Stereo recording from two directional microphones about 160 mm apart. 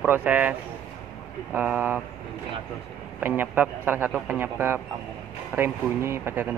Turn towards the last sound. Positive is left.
turn(degrees=-15)  # may be behind; listen again after turning